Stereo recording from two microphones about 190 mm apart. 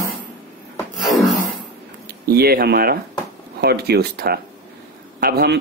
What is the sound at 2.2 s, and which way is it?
Speech, 55° right (ahead or behind).